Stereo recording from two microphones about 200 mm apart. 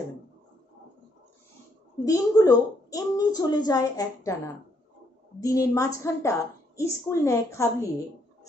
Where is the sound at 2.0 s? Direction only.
20° left (ahead or behind).